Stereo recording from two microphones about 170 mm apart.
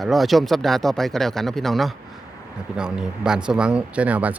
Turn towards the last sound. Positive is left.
turn(degrees=-10)  # may be behind; listen again after turning